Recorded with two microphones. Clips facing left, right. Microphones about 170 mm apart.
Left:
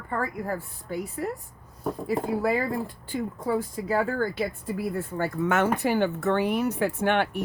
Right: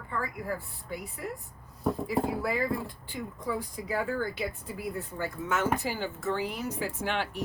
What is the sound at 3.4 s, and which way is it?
Speech, 50° left (ahead or behind).